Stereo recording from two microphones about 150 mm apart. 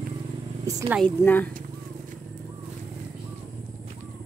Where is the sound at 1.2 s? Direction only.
15° left (ahead or behind).